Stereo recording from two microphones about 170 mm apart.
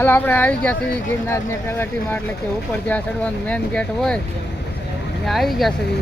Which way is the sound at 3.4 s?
5° left (ahead or behind).